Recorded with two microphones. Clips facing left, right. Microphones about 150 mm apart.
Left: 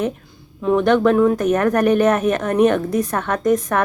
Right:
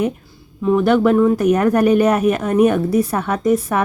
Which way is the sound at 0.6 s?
5° right (ahead or behind).